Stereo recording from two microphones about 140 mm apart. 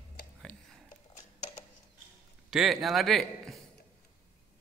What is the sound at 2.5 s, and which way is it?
A man's voice, centre (ahead or behind).